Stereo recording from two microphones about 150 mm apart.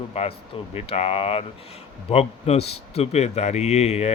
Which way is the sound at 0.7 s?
40° left (ahead or behind).